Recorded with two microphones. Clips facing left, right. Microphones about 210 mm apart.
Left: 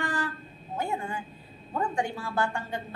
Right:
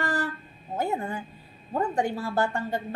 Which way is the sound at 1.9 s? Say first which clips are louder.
Right 4 dB; 40° right (ahead or behind).